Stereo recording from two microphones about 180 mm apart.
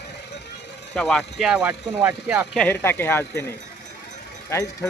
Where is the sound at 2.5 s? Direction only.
10° left (ahead or behind).